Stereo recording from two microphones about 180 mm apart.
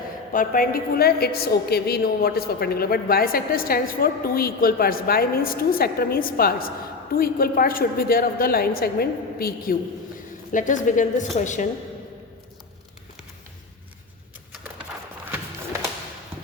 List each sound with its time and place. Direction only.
0.3 s a woman's voice: 50° left (ahead or behind)
10.5 s a woman's voice: 45° left (ahead or behind)